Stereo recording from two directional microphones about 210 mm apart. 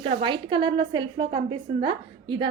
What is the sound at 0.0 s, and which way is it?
A woman's voice, 25° right (ahead or behind).